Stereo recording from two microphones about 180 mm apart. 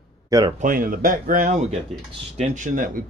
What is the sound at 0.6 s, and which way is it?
Speech, 50° right (ahead or behind).